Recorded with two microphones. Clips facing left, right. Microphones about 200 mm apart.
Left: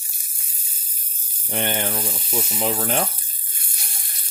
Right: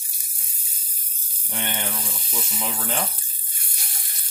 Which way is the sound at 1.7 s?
45° left (ahead or behind).